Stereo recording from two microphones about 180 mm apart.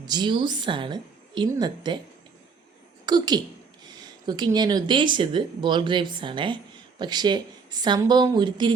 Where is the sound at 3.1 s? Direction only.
25° right (ahead or behind).